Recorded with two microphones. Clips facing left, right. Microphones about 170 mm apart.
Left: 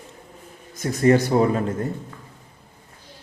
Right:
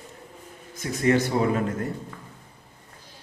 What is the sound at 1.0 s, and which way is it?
Speech, 40° left (ahead or behind).